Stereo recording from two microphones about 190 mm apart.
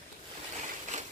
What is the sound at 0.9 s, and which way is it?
Sewing machine, 40° right (ahead or behind).